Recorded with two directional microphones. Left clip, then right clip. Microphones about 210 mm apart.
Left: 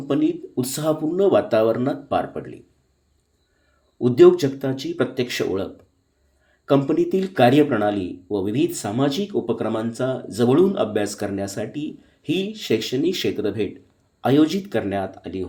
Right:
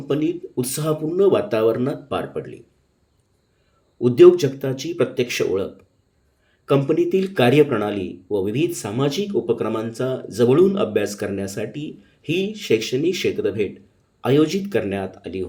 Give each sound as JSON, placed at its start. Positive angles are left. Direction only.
{"t": 0.1, "sound": "speech", "side_deg": 15}
{"t": 3.9, "sound": "speech", "side_deg": 10}
{"t": 6.7, "sound": "speech", "side_deg": 15}